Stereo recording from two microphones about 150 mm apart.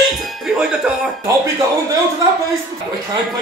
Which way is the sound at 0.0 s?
Centre (ahead or behind).